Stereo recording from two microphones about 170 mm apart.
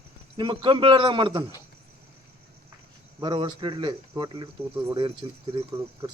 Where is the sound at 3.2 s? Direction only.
25° right (ahead or behind).